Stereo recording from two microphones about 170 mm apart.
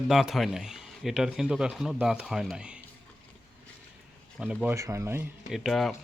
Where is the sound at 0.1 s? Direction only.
Centre (ahead or behind).